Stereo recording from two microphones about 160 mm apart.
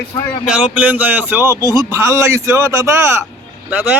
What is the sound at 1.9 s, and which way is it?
Speech, 15° right (ahead or behind).